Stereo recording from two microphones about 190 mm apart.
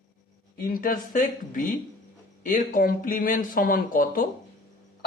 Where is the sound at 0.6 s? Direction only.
50° left (ahead or behind).